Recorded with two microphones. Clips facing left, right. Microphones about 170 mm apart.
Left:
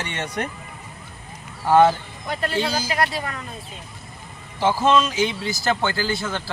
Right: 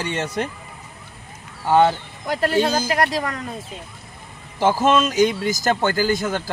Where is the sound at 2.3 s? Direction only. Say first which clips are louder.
Right 5 dB; 75° right (ahead or behind).